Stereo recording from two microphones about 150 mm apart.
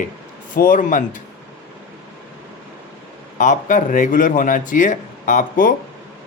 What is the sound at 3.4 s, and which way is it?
A man's voice, 55° left (ahead or behind).